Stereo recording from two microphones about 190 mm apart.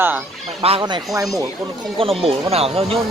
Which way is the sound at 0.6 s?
25° right (ahead or behind).